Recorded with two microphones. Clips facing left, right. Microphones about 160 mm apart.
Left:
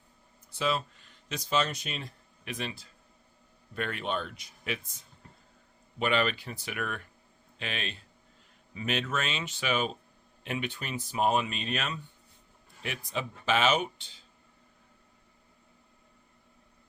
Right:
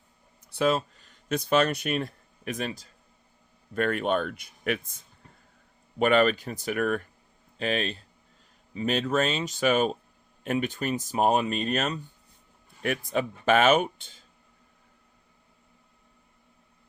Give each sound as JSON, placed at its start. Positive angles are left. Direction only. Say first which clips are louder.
{"t": 0.5, "sound": "speech", "louder": "right 6 dB", "side_deg": -45}
{"t": 6.0, "sound": "speech", "louder": "right 7 dB", "side_deg": -45}